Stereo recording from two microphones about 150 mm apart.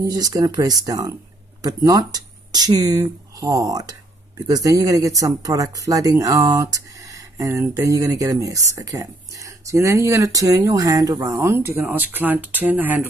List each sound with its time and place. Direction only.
0.0 s speech: 25° right (ahead or behind)